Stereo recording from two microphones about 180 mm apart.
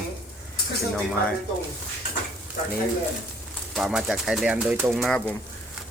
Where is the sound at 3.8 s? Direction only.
Centre (ahead or behind).